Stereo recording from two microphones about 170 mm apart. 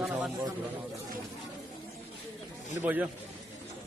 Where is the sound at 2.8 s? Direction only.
10° right (ahead or behind).